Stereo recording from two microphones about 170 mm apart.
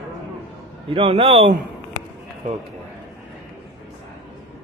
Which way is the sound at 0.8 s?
35° right (ahead or behind).